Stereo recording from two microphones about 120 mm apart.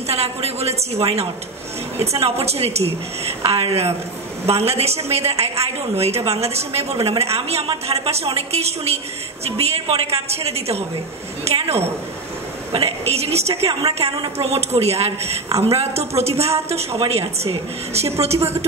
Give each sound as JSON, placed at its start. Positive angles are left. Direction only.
{"t": 0.1, "sound": "a woman's voice", "side_deg": -60}
{"t": 2.2, "sound": "a woman's voice", "side_deg": -60}